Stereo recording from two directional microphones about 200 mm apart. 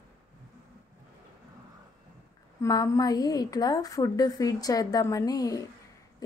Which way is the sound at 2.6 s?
15° left (ahead or behind).